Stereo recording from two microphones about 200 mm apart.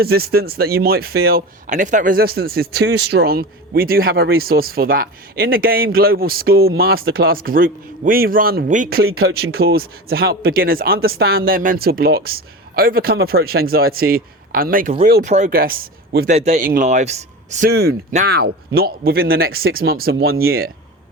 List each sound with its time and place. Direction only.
0.0 s speech: 50° right (ahead or behind)
17.7 s speech: 50° right (ahead or behind)